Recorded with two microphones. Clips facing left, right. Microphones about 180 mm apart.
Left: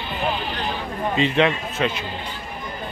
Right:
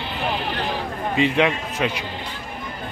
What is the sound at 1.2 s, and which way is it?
Speech, 15° right (ahead or behind).